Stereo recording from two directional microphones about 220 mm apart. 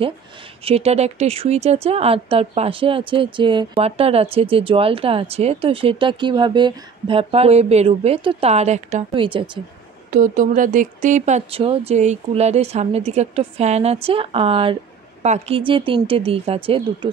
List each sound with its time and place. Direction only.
0.7 s speech: 30° right (ahead or behind)
10.1 s speech: 35° right (ahead or behind)